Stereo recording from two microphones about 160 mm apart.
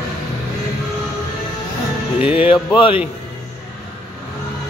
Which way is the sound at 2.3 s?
30° left (ahead or behind).